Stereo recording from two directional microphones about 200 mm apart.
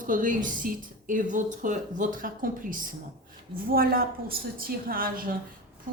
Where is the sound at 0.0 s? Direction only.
40° right (ahead or behind).